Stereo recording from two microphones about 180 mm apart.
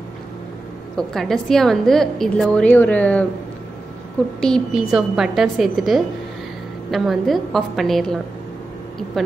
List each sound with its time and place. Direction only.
0.9 s a woman's voice: centre (ahead or behind)
4.4 s a woman's voice: centre (ahead or behind)